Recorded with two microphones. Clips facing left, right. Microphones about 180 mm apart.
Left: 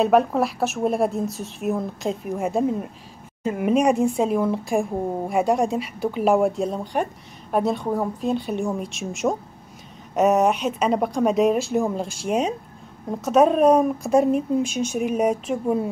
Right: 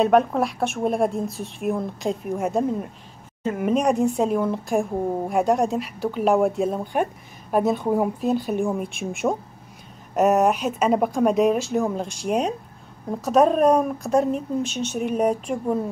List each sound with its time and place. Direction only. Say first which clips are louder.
0.0 s a woman's voice: even; centre (ahead or behind)